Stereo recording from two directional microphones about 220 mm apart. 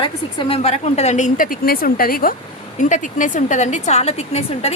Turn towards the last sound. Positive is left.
turn(degrees=30)  # may be behind; listen again after turning